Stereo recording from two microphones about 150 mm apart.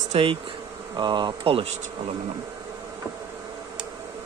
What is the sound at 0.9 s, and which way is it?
Speech, 30° right (ahead or behind).